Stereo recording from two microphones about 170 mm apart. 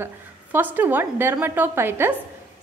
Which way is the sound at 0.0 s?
10° right (ahead or behind).